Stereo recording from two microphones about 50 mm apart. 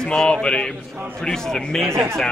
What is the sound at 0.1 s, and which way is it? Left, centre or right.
A man's voice, centre.